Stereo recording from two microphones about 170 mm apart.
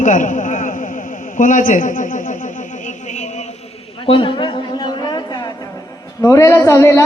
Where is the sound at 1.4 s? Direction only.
50° left (ahead or behind).